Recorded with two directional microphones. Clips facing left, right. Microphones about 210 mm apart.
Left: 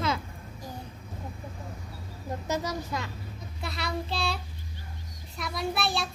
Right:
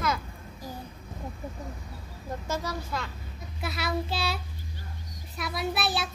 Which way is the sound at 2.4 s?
15° left (ahead or behind).